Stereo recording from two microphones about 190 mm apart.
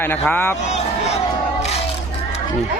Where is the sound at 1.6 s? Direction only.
35° left (ahead or behind).